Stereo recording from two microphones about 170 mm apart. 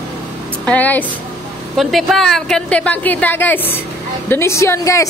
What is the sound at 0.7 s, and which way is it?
A woman's voice, 10° left (ahead or behind).